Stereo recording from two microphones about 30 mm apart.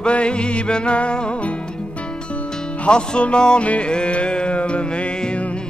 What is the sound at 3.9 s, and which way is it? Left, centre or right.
Music, left.